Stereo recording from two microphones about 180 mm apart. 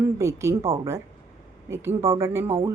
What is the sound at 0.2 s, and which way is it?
Speech, 15° right (ahead or behind).